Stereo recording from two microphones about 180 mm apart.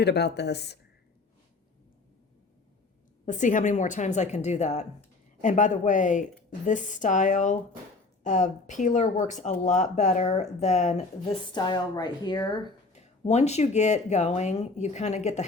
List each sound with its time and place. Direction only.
0.0 s speech: 70° left (ahead or behind)
3.2 s speech: 45° left (ahead or behind); by 12.5 s 25° left (ahead or behind)
12.9 s speech: 40° left (ahead or behind)